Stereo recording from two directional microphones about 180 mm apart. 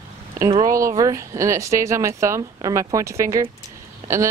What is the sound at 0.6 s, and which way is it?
Speech, 15° right (ahead or behind).